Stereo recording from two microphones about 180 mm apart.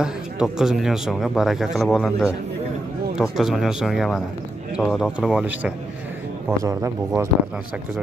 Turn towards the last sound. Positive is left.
turn(degrees=-15)  # may be behind; listen again after turning